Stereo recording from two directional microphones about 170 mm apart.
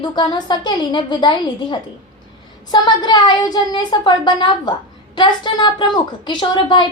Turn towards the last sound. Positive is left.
turn(degrees=30)  # may be behind; listen again after turning